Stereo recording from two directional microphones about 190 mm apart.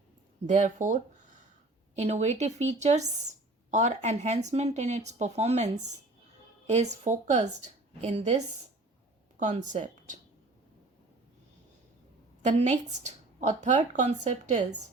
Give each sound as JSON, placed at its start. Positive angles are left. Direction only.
{"t": 0.4, "sound": "speech", "side_deg": -40}
{"t": 6.9, "sound": "speech", "side_deg": -40}
{"t": 9.4, "sound": "speech", "side_deg": -40}
{"t": 12.5, "sound": "speech", "side_deg": -40}